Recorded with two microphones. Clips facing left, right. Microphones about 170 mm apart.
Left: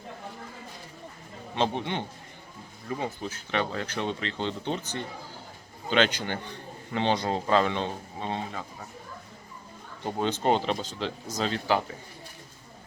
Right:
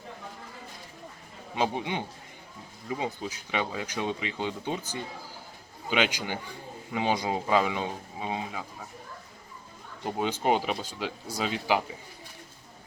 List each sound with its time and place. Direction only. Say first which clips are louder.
1.5 s speech: left 1 dB; 10° right (ahead or behind)
10.0 s speech: left 1 dB; 10° right (ahead or behind)